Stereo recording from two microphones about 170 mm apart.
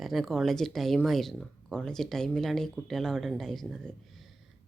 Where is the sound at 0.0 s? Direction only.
Centre (ahead or behind).